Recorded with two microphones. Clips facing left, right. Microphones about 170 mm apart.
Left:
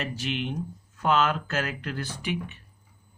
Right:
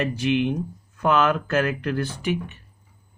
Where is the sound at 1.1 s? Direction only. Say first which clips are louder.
Right 4 dB; 55° right (ahead or behind).